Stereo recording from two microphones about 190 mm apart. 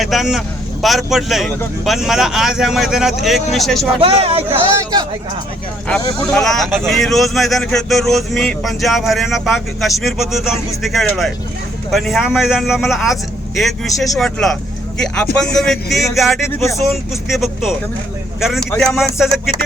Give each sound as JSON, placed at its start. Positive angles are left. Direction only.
{"t": 0.0, "sound": "a man's voice", "side_deg": 0}
{"t": 4.0, "sound": "a man's voice", "side_deg": -30}
{"t": 6.3, "sound": "a man's voice", "side_deg": 0}